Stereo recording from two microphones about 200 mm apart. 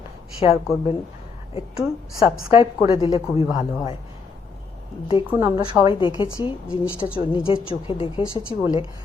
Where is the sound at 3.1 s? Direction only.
30° left (ahead or behind).